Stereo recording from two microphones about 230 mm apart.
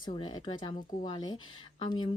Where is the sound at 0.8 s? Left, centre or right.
Left.